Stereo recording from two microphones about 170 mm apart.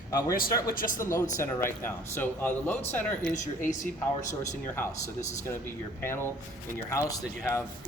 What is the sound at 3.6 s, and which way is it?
Speech, 45° left (ahead or behind).